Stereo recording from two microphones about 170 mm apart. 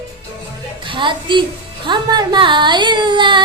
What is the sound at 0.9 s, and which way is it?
A woman's voice, 30° right (ahead or behind).